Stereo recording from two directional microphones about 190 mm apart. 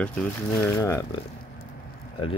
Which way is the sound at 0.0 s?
5° left (ahead or behind).